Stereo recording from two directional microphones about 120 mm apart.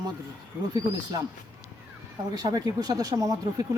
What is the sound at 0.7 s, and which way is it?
Speech, 30° right (ahead or behind).